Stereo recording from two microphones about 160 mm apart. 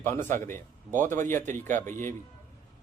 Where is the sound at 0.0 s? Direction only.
15° left (ahead or behind).